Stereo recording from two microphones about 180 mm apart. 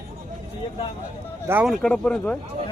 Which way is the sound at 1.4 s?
10° right (ahead or behind).